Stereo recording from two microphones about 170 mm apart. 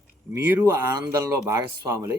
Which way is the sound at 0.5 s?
15° right (ahead or behind).